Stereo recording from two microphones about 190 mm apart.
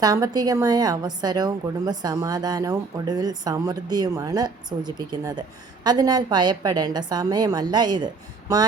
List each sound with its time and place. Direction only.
0.0 s a woman's voice: 20° right (ahead or behind)